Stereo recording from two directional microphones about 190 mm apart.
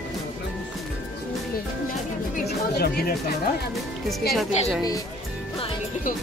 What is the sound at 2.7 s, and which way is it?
Speech, 55° left (ahead or behind).